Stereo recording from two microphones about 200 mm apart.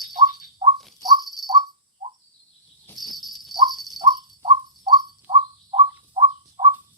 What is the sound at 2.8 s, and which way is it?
Cricket, centre (ahead or behind).